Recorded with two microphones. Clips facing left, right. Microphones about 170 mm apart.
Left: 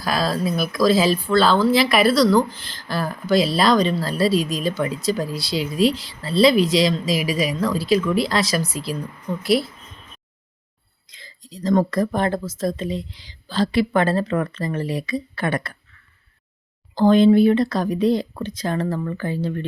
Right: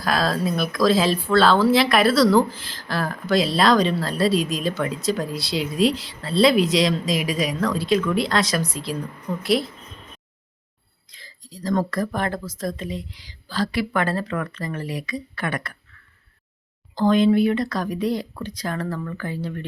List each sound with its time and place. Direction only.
0.0 s speech: centre (ahead or behind)
11.1 s speech: 20° left (ahead or behind)
16.9 s speech: 30° left (ahead or behind)